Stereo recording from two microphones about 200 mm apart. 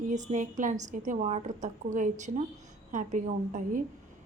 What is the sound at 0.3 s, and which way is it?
A woman's voice, 35° right (ahead or behind).